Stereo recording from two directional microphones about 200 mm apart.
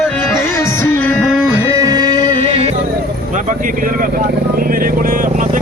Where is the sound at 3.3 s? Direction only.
40° right (ahead or behind).